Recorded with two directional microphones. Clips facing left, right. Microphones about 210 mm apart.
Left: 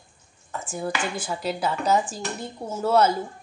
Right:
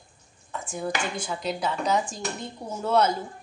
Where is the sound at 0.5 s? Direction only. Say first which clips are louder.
Left 1 dB; 5° left (ahead or behind).